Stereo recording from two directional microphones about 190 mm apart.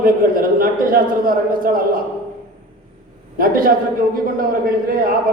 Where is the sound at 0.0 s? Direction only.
50° right (ahead or behind).